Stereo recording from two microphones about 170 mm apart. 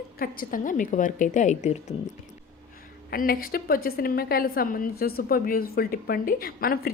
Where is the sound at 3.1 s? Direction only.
55° left (ahead or behind).